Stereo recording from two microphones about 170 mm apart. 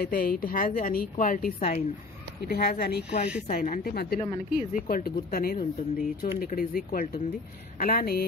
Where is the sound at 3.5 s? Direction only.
55° left (ahead or behind).